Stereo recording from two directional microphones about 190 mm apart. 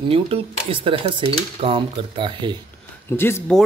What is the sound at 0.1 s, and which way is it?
Speech, 30° right (ahead or behind).